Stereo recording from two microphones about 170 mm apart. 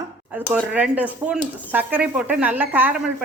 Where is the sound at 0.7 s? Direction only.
10° right (ahead or behind).